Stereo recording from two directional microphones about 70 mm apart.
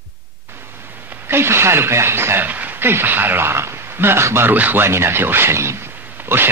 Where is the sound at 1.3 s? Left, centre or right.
Right.